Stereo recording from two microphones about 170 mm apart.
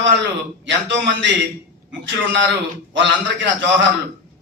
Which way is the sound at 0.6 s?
90° right.